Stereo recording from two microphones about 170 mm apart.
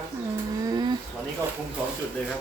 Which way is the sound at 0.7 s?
25° right (ahead or behind).